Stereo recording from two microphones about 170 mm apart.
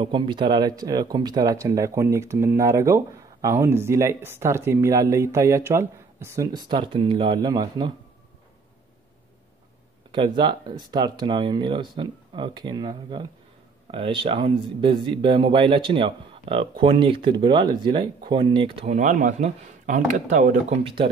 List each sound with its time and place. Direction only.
0.0 s speech: 30° right (ahead or behind)
10.1 s speech: 30° right (ahead or behind); by 20.8 s 50° right (ahead or behind)
20.8 s speech: 30° right (ahead or behind)